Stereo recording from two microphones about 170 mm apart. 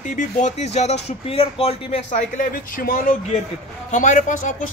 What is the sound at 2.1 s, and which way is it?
Speech, 50° left (ahead or behind).